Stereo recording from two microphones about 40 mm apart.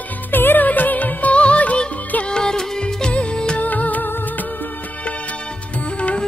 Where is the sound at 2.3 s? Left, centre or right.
Centre.